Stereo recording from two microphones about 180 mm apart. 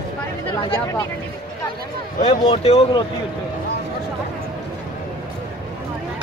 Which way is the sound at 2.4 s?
30° left (ahead or behind).